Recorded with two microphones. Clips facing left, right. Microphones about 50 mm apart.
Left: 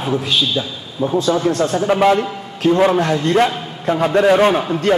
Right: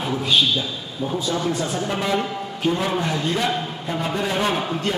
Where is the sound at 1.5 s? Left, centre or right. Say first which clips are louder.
Left 7 dB; left.